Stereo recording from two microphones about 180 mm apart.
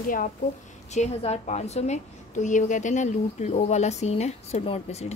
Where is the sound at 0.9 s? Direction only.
40° left (ahead or behind).